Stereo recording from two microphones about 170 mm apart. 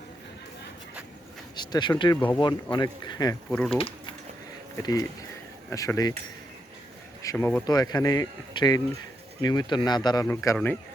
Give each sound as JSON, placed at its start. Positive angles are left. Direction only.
{"t": 1.5, "sound": "speech", "side_deg": 25}
{"t": 3.5, "sound": "speech", "side_deg": 5}
{"t": 3.8, "sound": "speech", "side_deg": 30}
{"t": 4.8, "sound": "speech", "side_deg": 20}
{"t": 7.2, "sound": "speech", "side_deg": 15}
{"t": 7.7, "sound": "speech", "side_deg": 25}
{"t": 10.2, "sound": "speech", "side_deg": 15}